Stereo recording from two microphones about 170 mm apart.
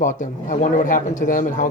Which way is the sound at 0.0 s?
50° left (ahead or behind).